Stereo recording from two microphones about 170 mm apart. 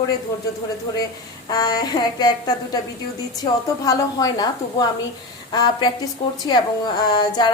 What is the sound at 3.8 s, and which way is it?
A woman's voice, 20° left (ahead or behind).